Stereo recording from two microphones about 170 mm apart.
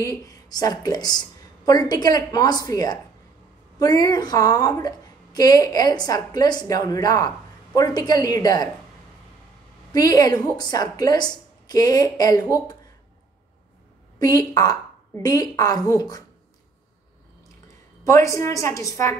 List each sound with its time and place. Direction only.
0.0 s a woman's voice: 20° left (ahead or behind)
9.9 s a woman's voice: 20° left (ahead or behind)
14.1 s a woman's voice: 20° left (ahead or behind)
18.0 s a woman's voice: 15° left (ahead or behind)